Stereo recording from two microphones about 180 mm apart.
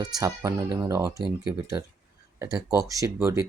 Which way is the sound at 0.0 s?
20° right (ahead or behind).